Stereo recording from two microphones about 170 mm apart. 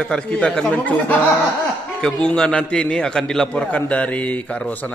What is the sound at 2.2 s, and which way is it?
A man's voice, 5° left (ahead or behind).